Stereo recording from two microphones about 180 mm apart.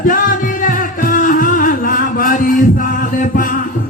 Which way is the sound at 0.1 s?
50° left (ahead or behind).